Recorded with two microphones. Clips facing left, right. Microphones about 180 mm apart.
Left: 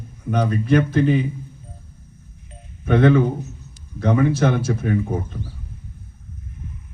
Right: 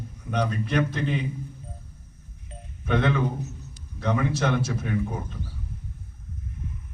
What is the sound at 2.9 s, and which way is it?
Speech, 50° left (ahead or behind).